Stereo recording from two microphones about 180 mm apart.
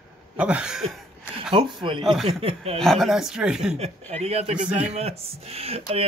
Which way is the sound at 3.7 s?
35° right (ahead or behind).